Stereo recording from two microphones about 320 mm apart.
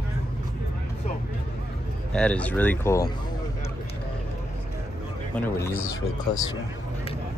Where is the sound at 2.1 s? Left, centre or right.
Centre.